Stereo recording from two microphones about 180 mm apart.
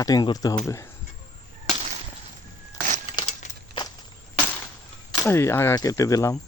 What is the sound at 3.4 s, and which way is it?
Crushing, 40° left (ahead or behind).